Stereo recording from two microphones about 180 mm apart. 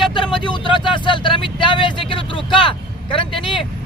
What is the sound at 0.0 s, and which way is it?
Vehicle, 25° left (ahead or behind).